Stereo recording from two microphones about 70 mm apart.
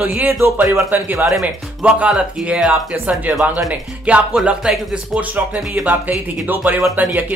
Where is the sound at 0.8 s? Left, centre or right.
Right.